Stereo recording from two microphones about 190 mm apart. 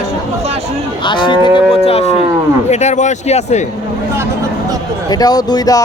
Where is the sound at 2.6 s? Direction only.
35° left (ahead or behind).